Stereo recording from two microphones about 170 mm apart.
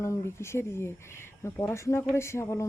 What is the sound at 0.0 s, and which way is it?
Speech, 15° left (ahead or behind).